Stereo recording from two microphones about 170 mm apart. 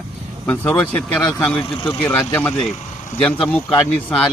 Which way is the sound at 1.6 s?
30° left (ahead or behind).